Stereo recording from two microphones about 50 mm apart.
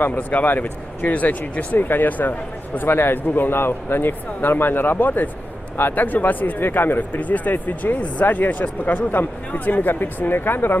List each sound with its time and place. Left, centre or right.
0.0 s speech: left
7.2 s speech: left